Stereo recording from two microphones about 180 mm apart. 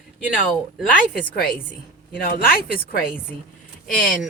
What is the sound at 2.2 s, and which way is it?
Speech, 55° left (ahead or behind).